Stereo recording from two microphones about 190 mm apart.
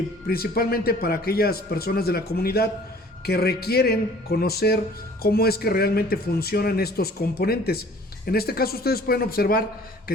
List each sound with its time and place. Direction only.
0.3 s a man's voice: 55° left (ahead or behind)